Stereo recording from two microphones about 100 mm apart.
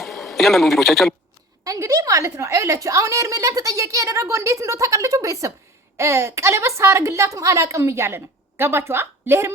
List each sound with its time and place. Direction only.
0.0 s speech: centre (ahead or behind)
1.6 s a woman's voice: 35° right (ahead or behind)